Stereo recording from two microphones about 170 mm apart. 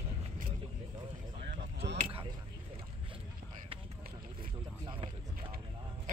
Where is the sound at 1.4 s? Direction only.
90° right.